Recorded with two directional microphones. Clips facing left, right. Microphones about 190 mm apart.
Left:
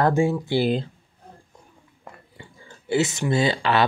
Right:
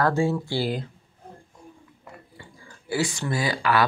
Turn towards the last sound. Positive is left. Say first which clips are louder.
# left 3 dB
turn(degrees=25)  # may be behind; listen again after turning